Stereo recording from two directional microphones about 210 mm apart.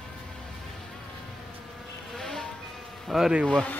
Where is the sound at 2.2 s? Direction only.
5° left (ahead or behind).